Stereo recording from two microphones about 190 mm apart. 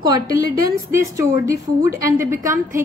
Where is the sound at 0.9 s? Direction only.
15° right (ahead or behind).